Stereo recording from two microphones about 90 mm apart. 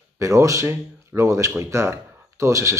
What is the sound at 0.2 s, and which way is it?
Speech, 35° right (ahead or behind).